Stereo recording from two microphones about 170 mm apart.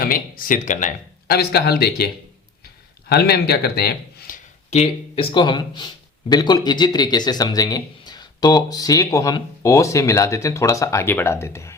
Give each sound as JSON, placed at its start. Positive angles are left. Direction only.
{"t": 0.0, "sound": "speech", "side_deg": 55}
{"t": 1.3, "sound": "speech", "side_deg": 70}
{"t": 3.1, "sound": "a man's voice", "side_deg": 70}
{"t": 4.7, "sound": "speech", "side_deg": 35}